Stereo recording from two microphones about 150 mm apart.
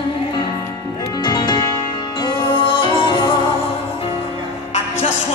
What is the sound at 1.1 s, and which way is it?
Music, 30° left (ahead or behind).